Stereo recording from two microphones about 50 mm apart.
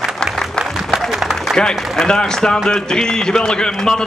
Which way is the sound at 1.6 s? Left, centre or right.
Centre.